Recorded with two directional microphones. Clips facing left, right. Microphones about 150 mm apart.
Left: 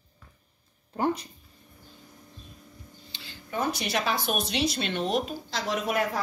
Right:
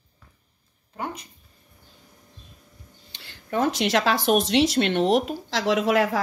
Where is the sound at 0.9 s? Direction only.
30° left (ahead or behind).